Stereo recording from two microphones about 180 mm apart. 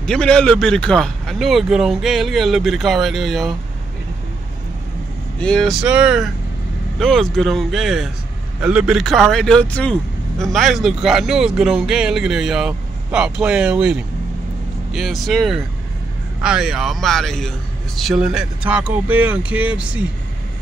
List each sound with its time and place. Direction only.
0.0 s speech: 5° left (ahead or behind)
5.4 s speech: 5° left (ahead or behind)